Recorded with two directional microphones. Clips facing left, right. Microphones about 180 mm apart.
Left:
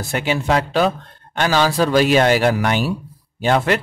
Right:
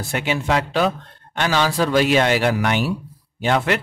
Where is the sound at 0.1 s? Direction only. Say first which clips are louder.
Left 2 dB; 35° left (ahead or behind).